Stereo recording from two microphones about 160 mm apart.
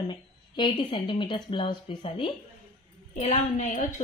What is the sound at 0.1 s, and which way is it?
A woman's voice, 30° left (ahead or behind).